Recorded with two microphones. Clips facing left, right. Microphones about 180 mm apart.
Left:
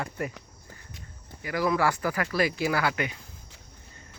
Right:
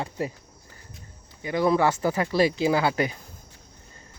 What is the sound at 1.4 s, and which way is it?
Speech, 25° right (ahead or behind).